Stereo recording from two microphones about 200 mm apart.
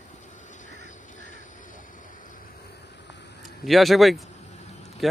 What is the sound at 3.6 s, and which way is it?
Speech, centre (ahead or behind).